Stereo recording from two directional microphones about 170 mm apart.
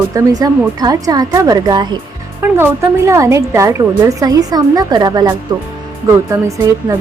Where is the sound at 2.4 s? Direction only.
15° right (ahead or behind).